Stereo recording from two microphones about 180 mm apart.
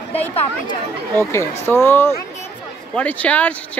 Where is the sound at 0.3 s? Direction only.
35° left (ahead or behind).